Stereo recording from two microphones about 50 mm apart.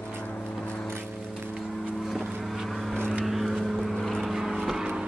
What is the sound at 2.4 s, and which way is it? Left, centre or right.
Vehicle, centre.